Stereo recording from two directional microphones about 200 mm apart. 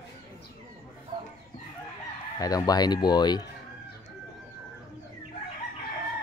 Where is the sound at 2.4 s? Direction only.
20° left (ahead or behind).